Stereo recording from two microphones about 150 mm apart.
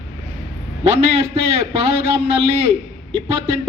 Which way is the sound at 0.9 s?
45° right (ahead or behind).